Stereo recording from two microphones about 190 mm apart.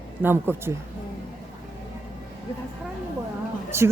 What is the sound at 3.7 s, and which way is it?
Speech, 15° right (ahead or behind).